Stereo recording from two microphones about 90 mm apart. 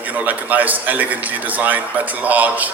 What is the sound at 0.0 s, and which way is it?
A man's voice, 15° right (ahead or behind).